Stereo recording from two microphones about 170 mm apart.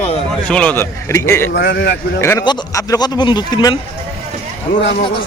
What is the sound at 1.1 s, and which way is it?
Speech, 20° left (ahead or behind).